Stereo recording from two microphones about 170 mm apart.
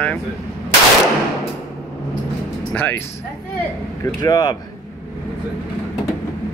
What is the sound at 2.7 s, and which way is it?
Speech, 10° left (ahead or behind).